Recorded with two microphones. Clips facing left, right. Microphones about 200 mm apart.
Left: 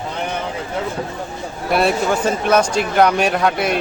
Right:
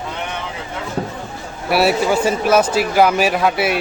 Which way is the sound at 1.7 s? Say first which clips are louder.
Right 2 dB; 5° right (ahead or behind).